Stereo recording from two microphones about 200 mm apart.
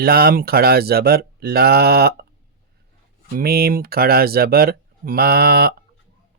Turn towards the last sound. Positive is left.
turn(degrees=-50)  # may be behind; listen again after turning